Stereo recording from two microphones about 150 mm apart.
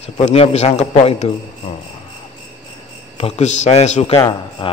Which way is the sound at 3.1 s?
40° left (ahead or behind).